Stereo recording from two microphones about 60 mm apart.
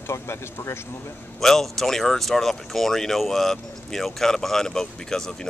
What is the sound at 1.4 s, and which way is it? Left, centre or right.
Speech, centre.